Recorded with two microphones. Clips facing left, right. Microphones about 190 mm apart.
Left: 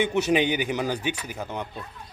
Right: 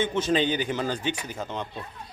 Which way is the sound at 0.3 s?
15° left (ahead or behind).